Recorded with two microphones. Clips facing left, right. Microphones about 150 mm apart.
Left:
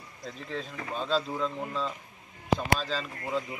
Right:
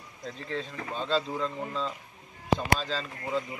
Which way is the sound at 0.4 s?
5° left (ahead or behind).